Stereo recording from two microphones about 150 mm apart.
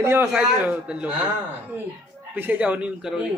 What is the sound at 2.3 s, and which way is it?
Speech, 15° right (ahead or behind).